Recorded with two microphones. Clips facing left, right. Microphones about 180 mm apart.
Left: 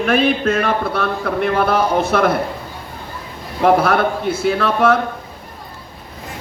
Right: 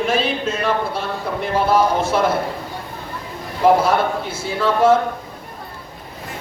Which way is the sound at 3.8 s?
60° left (ahead or behind).